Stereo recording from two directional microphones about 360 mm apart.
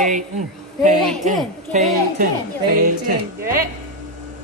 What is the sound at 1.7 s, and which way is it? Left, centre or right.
Speech, centre.